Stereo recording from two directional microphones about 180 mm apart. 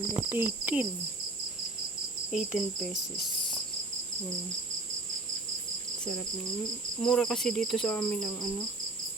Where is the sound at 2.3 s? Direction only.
Centre (ahead or behind).